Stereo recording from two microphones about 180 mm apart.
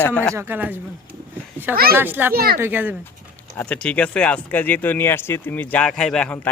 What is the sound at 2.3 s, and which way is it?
Speech, 55° right (ahead or behind).